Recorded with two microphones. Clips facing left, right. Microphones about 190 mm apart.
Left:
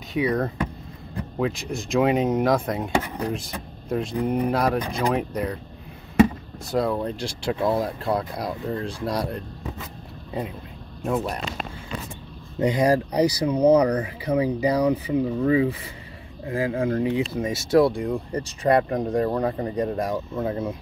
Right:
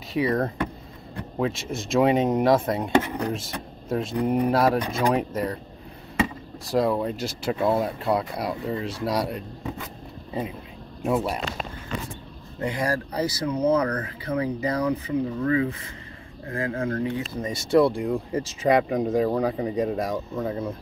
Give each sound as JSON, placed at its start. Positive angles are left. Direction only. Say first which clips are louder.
{"t": 0.1, "sound": "speech", "louder": "even", "side_deg": 0}
{"t": 6.6, "sound": "speech", "louder": "right 1 dB", "side_deg": 0}
{"t": 11.1, "sound": "speech", "louder": "right 1 dB", "side_deg": -5}
{"t": 12.5, "sound": "speech", "louder": "left 6 dB", "side_deg": 20}